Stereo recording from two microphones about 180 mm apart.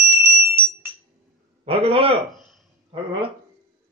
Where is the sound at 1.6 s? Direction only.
35° right (ahead or behind).